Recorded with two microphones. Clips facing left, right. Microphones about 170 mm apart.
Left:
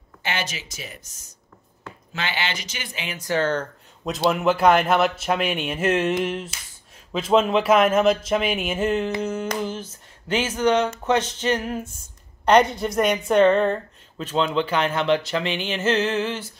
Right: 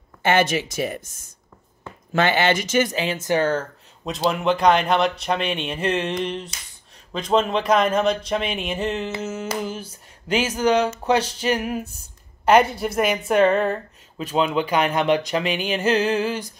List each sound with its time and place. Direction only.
0.2 s speech: 50° right (ahead or behind)
2.1 s speech: 50° right (ahead or behind)
3.2 s speech: 15° right (ahead or behind)
4.0 s speech: centre (ahead or behind)